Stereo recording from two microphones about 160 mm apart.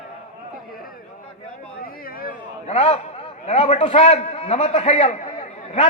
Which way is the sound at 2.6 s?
40° left (ahead or behind).